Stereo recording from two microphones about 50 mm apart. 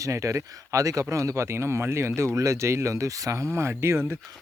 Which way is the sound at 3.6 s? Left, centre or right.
Right.